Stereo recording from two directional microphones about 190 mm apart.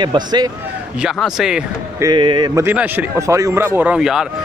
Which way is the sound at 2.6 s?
10° right (ahead or behind).